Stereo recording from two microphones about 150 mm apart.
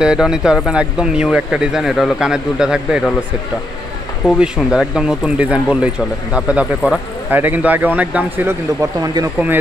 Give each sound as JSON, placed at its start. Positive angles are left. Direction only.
{"t": 0.0, "sound": "speech", "side_deg": -5}
{"t": 4.4, "sound": "speech", "side_deg": 0}
{"t": 9.0, "sound": "speech", "side_deg": -25}